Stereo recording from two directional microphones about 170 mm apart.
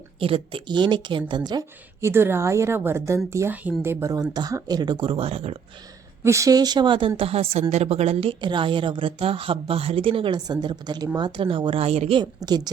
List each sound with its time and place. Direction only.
0.2 s a woman's voice: 30° right (ahead or behind)
6.2 s a woman's voice: 15° right (ahead or behind)